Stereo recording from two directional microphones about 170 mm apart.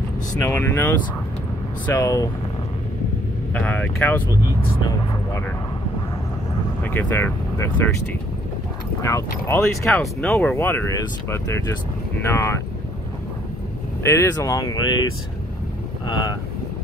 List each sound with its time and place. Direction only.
0.4 s speech: 15° left (ahead or behind)
3.5 s speech: 10° left (ahead or behind)
4.6 s speech: 25° left (ahead or behind)
6.8 s speech: 10° left (ahead or behind)
9.0 s speech: 15° left (ahead or behind)
14.0 s speech: 20° left (ahead or behind)